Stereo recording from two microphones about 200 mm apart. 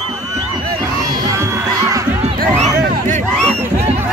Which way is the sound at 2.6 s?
35° right (ahead or behind).